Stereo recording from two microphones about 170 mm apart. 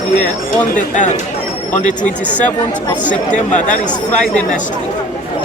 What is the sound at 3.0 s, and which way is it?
Speech, 45° left (ahead or behind).